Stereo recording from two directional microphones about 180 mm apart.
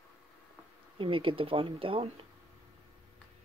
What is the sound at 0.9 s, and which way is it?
Speech, 30° right (ahead or behind).